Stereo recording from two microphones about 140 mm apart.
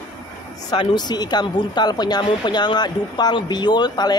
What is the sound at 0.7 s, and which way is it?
Speech, 30° left (ahead or behind).